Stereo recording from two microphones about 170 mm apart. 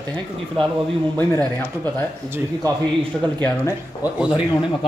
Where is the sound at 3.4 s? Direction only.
10° left (ahead or behind).